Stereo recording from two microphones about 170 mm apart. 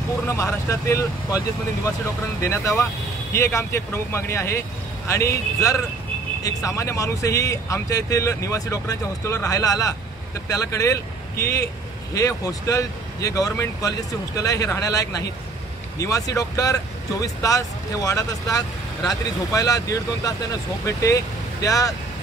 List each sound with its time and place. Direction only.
0.3 s speech: 15° left (ahead or behind)
2.4 s speech: 15° left (ahead or behind)